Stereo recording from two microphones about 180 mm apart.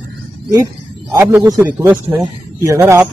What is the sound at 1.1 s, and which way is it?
A man's voice, 10° right (ahead or behind).